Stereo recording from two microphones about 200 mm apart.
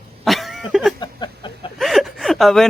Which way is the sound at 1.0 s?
20° left (ahead or behind).